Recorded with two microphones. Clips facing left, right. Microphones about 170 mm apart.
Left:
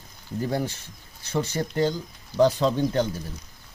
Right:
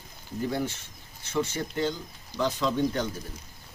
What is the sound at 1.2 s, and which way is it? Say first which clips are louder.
A man's voice: left 2 dB; 35° left (ahead or behind).